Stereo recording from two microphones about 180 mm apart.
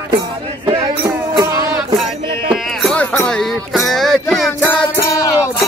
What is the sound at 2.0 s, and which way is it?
Music, centre (ahead or behind).